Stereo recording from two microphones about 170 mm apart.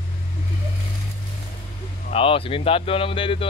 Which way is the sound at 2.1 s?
35° left (ahead or behind).